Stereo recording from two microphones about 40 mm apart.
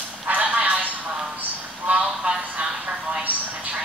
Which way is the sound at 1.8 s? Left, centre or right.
Right.